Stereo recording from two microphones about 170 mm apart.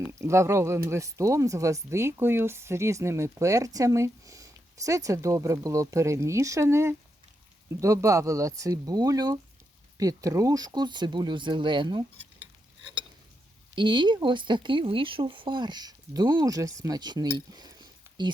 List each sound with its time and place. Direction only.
0.0 s speech: 15° right (ahead or behind)
13.7 s speech: 30° right (ahead or behind)
17.3 s a sound: 25° right (ahead or behind)